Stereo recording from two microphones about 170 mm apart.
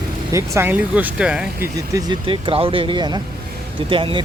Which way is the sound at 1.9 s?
25° right (ahead or behind).